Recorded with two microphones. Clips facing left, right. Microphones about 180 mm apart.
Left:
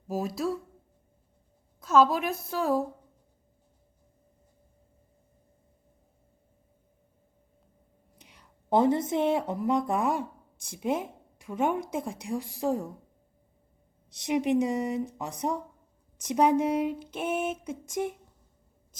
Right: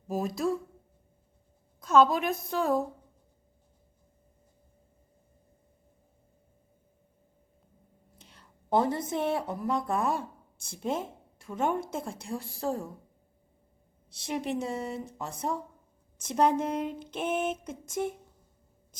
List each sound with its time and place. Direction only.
0.1 s a woman's voice: 5° left (ahead or behind)
1.8 s a woman's voice: 5° left (ahead or behind)
8.2 s a woman's voice: 15° left (ahead or behind)
14.1 s speech: 20° left (ahead or behind)